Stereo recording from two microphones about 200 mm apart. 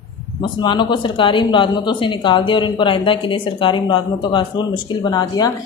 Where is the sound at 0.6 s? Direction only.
25° left (ahead or behind).